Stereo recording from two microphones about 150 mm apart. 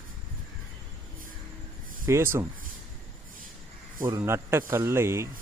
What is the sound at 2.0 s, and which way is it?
Speech, 15° right (ahead or behind).